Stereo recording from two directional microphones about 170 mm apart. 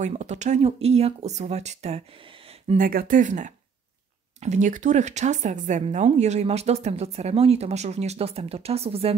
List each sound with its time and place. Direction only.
0.0 s speech: 45° right (ahead or behind)
2.7 s speech: 55° right (ahead or behind); by 9.1 s 35° right (ahead or behind)